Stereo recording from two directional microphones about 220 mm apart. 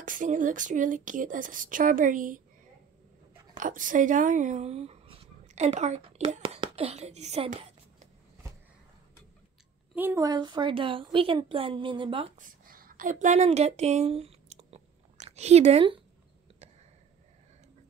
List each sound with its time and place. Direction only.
0.0 s speech: 35° right (ahead or behind)
3.5 s speech: 35° right (ahead or behind)
9.9 s speech: 10° right (ahead or behind)
12.4 s a sound: 40° right (ahead or behind)